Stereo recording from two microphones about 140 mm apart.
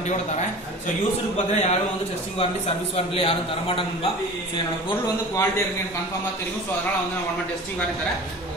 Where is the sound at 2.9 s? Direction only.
40° left (ahead or behind).